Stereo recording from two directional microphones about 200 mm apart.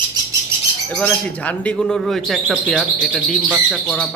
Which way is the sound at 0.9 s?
5° left (ahead or behind).